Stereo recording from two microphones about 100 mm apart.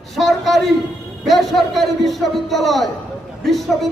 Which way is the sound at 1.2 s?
Centre (ahead or behind).